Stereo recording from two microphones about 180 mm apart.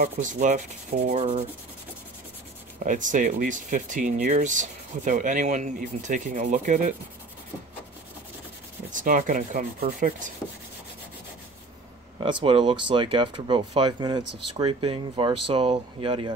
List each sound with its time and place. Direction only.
0.0 s speech: 45° right (ahead or behind)
1.1 s rub: 35° right (ahead or behind)
2.8 s speech: 45° right (ahead or behind)
8.9 s speech: 45° right (ahead or behind)
12.2 s speech: 25° right (ahead or behind)